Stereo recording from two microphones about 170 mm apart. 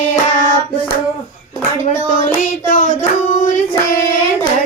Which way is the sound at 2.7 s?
45° left (ahead or behind).